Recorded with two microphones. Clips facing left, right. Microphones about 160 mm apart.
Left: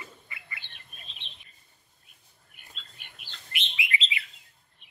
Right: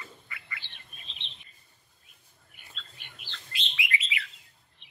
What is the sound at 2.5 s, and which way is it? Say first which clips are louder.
Bird: right 1 dB; 50° left (ahead or behind).